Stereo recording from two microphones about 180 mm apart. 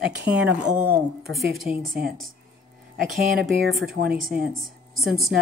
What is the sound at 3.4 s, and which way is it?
Speech, centre (ahead or behind).